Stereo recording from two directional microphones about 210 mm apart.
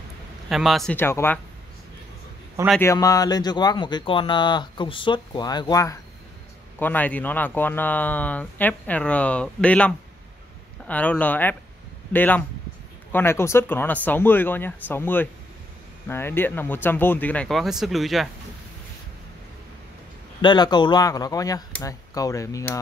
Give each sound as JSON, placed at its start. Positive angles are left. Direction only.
{"t": 0.5, "sound": "speech", "side_deg": 0}
{"t": 2.7, "sound": "speech", "side_deg": 15}
{"t": 20.4, "sound": "speech", "side_deg": 20}